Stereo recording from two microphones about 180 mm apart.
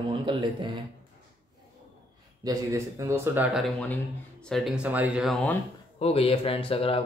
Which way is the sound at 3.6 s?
5° left (ahead or behind).